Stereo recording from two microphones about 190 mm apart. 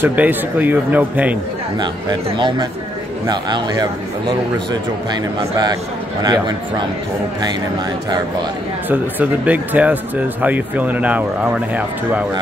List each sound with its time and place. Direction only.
0.0 s speech: 10° right (ahead or behind)
1.8 s speech: 20° right (ahead or behind)
6.2 s speech: 20° right (ahead or behind)
8.8 s speech: 10° right (ahead or behind)